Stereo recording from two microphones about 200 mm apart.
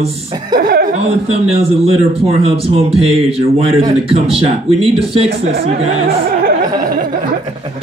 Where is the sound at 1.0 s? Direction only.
30° right (ahead or behind).